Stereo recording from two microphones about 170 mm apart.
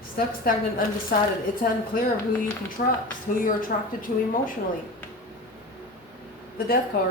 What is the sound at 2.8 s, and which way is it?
Speech, 60° left (ahead or behind).